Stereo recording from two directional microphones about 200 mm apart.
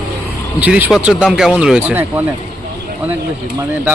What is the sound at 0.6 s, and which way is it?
Speech, 5° right (ahead or behind).